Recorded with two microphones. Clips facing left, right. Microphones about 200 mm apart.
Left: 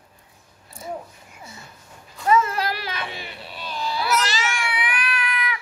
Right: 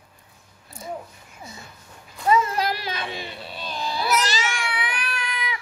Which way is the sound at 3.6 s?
20° right (ahead or behind).